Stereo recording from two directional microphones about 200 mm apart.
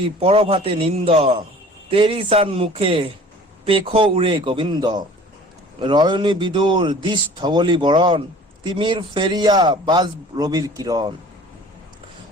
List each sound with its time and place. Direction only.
0.2 s a man's voice: 30° right (ahead or behind)